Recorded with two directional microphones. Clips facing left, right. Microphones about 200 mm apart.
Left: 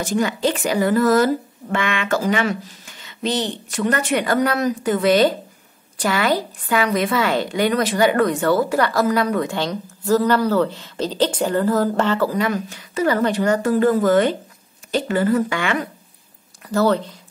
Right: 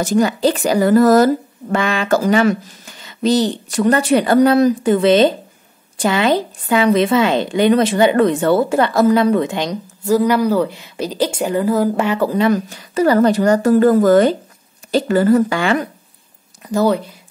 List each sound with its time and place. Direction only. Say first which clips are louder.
0.0 s a woman's voice: right 5 dB; 40° right (ahead or behind); by 12.3 s 15° right (ahead or behind)
12.3 s speech: right 6 dB; 30° right (ahead or behind)
16.6 s speech: right 2 dB; 15° right (ahead or behind)